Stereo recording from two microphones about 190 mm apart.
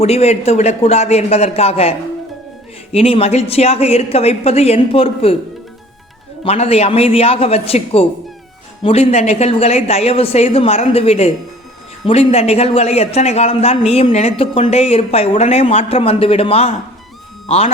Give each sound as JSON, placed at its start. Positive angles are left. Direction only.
{"t": 0.0, "sound": "speech", "side_deg": 30}
{"t": 6.4, "sound": "speech", "side_deg": 30}